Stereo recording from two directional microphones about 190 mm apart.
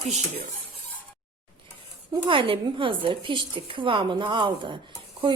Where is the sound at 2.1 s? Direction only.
25° right (ahead or behind).